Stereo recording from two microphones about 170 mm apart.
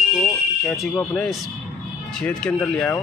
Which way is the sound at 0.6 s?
Centre (ahead or behind).